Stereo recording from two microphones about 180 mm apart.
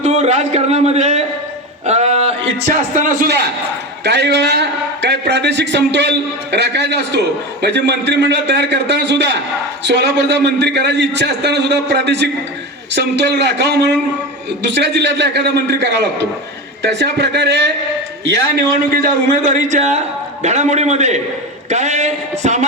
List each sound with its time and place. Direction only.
0.0 s a man's voice: 40° right (ahead or behind)
1.9 s a sound: 40° right (ahead or behind)
2.9 s a man's voice: 45° right (ahead or behind); by 17.7 s 70° right (ahead or behind)
18.3 s a man's voice: 55° right (ahead or behind)
19.7 s speech: 40° right (ahead or behind)